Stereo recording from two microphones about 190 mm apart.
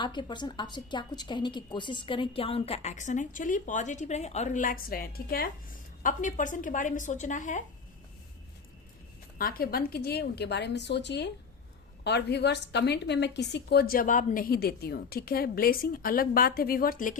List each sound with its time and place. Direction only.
0.0 s a woman's voice: 25° left (ahead or behind); by 7.6 s 40° left (ahead or behind)
9.4 s a woman's voice: 50° left (ahead or behind)